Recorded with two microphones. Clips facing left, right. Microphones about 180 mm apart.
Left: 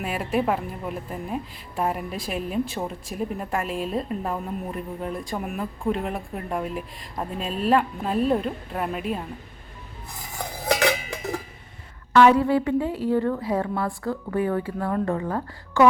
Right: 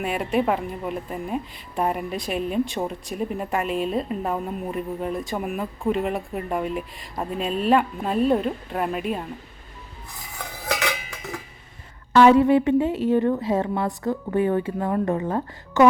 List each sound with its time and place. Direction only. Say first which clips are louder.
0.0 s a woman's voice: right 2 dB; centre (ahead or behind)
12.1 s a woman's voice: right 2 dB; 25° right (ahead or behind)